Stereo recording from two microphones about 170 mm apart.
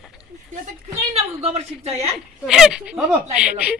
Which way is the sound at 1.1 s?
40° right (ahead or behind).